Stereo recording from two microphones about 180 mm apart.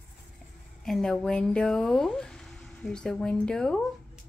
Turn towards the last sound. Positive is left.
turn(degrees=5)  # may be behind; listen again after turning